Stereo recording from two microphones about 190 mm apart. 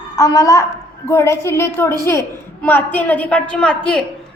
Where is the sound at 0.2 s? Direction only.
15° left (ahead or behind).